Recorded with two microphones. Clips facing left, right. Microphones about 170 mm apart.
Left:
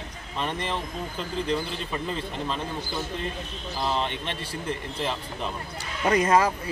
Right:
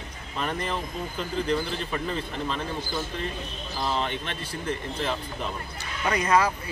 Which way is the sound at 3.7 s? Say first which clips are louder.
Left 1 dB; centre (ahead or behind).